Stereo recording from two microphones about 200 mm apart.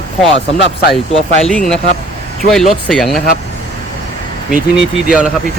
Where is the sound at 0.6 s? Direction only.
65° left (ahead or behind).